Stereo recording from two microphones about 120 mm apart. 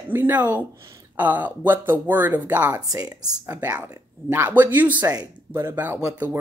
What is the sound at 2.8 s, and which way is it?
Speech, 30° right (ahead or behind).